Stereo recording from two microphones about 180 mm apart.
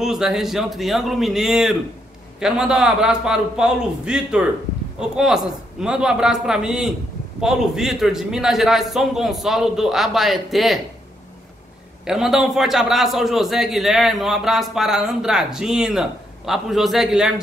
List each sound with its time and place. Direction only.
0.0 s a man's voice: 5° right (ahead or behind)
12.0 s a man's voice: centre (ahead or behind)